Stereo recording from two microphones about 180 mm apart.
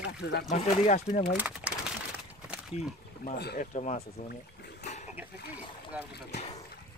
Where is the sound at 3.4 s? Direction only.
65° left (ahead or behind).